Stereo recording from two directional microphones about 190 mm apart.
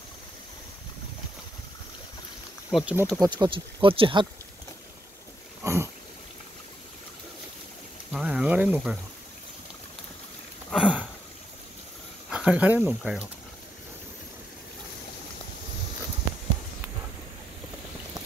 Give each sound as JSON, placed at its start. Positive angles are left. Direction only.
{"t": 2.7, "sound": "speech", "side_deg": -5}
{"t": 3.2, "sound": "speech", "side_deg": -20}
{"t": 5.6, "sound": "a sound", "side_deg": -15}
{"t": 8.1, "sound": "a sound", "side_deg": -5}
{"t": 10.7, "sound": "sniff", "side_deg": -5}
{"t": 12.3, "sound": "speech", "side_deg": -5}